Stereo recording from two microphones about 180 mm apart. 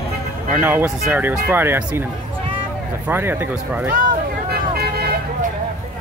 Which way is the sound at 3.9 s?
50° right (ahead or behind).